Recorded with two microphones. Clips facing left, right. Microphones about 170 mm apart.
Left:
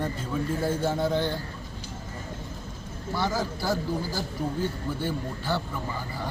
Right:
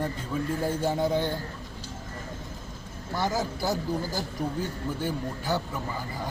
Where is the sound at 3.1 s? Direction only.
20° right (ahead or behind).